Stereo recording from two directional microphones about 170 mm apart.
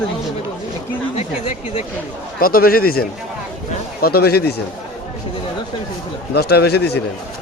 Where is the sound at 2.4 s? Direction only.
60° left (ahead or behind).